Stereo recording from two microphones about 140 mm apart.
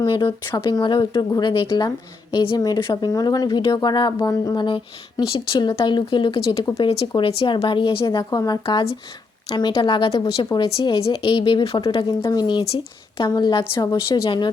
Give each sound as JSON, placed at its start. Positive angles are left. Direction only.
{"t": 0.0, "sound": "speech", "side_deg": 35}
{"t": 10.8, "sound": "speech", "side_deg": 40}